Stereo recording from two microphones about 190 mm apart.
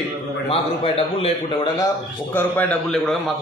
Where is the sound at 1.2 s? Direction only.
25° left (ahead or behind).